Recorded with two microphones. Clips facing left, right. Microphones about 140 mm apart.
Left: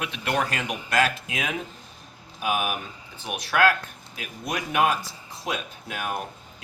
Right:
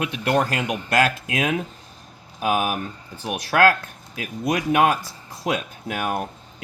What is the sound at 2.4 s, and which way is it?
Speech, 35° right (ahead or behind).